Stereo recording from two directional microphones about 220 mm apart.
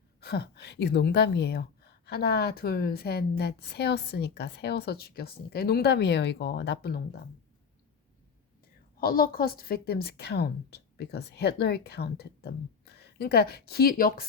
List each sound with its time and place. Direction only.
0.2 s a woman's voice: 45° left (ahead or behind)
9.0 s a woman's voice: 40° left (ahead or behind)